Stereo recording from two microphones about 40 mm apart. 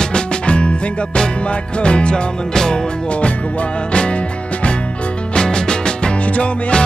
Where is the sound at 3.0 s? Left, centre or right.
Left.